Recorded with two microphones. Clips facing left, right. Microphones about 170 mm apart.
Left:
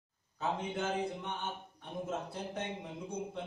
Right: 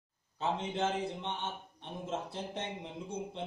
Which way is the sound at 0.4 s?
25° right (ahead or behind).